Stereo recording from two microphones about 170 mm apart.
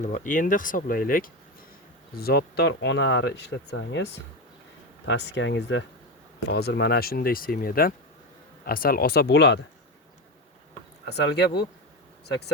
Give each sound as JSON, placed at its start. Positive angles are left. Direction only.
{"t": 0.0, "sound": "speech", "side_deg": 50}
{"t": 2.1, "sound": "speech", "side_deg": 65}
{"t": 6.5, "sound": "speech", "side_deg": 70}
{"t": 11.1, "sound": "speech", "side_deg": 80}